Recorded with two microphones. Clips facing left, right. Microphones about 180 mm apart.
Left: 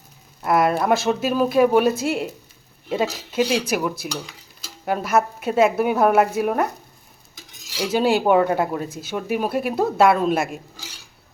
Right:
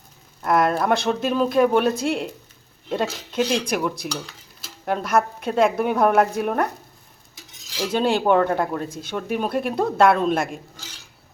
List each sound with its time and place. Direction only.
0.4 s speech: 5° left (ahead or behind)
7.8 s speech: 5° left (ahead or behind)